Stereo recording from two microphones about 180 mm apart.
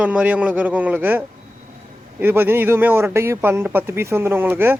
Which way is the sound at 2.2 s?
10° right (ahead or behind).